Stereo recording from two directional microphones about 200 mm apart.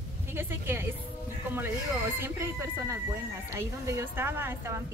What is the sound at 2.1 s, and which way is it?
A woman's voice, 10° right (ahead or behind).